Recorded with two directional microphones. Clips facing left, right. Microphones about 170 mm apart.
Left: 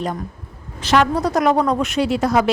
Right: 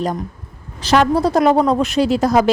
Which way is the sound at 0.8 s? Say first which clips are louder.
Right 3 dB; 35° right (ahead or behind).